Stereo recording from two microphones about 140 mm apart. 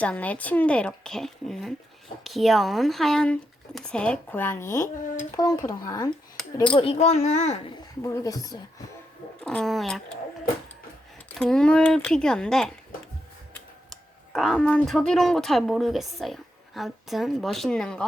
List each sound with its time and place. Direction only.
0.0 s speech: 10° left (ahead or behind); by 6.1 s 25° left (ahead or behind)
6.9 s speech: 50° left (ahead or behind)
7.8 s speech: 25° left (ahead or behind)
9.4 s speech: 5° left (ahead or behind)
11.3 s speech: 5° left (ahead or behind)
13.9 s speech: centre (ahead or behind)